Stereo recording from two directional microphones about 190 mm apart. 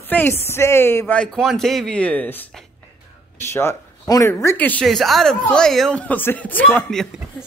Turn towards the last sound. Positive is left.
turn(degrees=0)  # may be behind; listen again after turning